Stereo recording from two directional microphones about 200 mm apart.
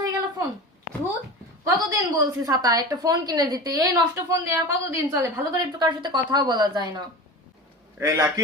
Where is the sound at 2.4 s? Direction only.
20° right (ahead or behind).